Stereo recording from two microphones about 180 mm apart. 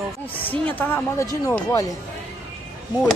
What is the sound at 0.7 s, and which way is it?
Speech, 15° left (ahead or behind).